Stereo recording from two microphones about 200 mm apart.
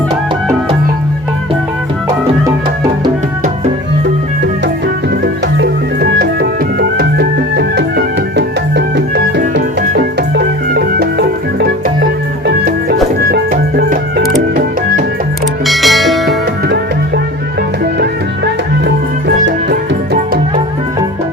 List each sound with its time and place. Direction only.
5.2 s music: 55° right (ahead or behind)
13.5 s music: 45° right (ahead or behind)
15.6 s music: centre (ahead or behind)
19.5 s music: 50° right (ahead or behind)